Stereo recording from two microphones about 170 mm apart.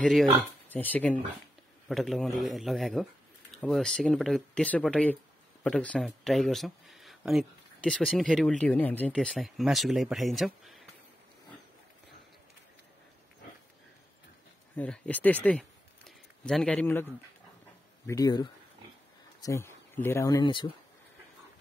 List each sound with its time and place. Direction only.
0.0 s speech: 5° left (ahead or behind)
14.8 s speech: 10° left (ahead or behind)